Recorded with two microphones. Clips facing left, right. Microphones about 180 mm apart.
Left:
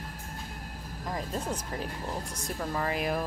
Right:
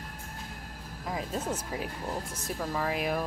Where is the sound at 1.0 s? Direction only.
5° right (ahead or behind).